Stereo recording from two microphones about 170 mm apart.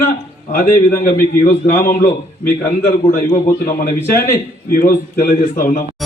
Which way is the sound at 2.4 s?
60° left (ahead or behind).